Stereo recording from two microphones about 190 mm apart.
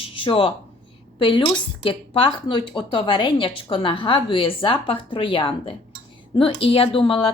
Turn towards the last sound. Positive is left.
turn(degrees=30)  # may be behind; listen again after turning